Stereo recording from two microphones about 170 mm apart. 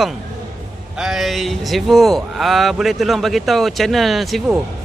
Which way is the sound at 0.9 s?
5° right (ahead or behind).